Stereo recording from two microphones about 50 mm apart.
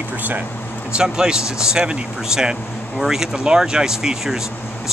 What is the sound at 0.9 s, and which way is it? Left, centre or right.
Speech, centre.